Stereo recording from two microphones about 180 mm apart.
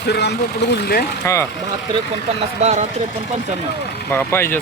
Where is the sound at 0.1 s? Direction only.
70° left (ahead or behind).